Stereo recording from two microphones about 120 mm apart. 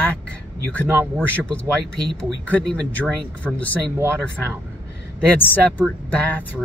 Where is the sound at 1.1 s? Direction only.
10° left (ahead or behind).